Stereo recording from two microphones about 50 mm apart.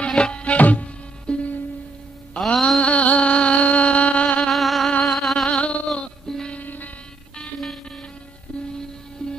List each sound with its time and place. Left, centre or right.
0.0 s music: left
1.3 s music: centre
2.8 s music: left
4.4 s music: centre
5.0 s a sound: centre
5.5 s a sound: left
5.9 s music: centre
6.5 s music: left
9.2 s music: centre